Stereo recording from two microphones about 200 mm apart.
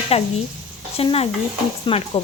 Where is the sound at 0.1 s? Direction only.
30° left (ahead or behind).